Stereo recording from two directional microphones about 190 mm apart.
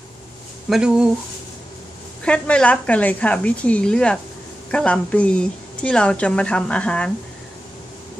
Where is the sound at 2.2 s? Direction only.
5° left (ahead or behind).